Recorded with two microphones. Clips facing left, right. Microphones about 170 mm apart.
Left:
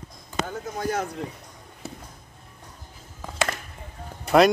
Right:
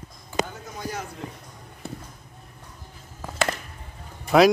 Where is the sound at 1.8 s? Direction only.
Centre (ahead or behind).